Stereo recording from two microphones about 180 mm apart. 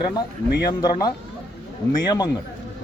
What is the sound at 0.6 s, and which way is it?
Speech, 20° left (ahead or behind).